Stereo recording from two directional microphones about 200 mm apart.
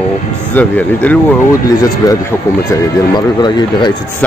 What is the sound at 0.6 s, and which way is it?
Speech, 10° left (ahead or behind).